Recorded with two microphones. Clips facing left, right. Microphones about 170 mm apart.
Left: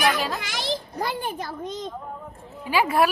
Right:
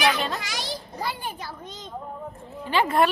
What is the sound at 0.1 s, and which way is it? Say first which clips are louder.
Children playing: left 1 dB; centre (ahead or behind).